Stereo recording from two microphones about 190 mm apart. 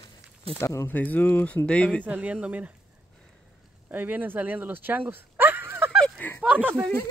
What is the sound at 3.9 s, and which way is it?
Speech, 10° right (ahead or behind).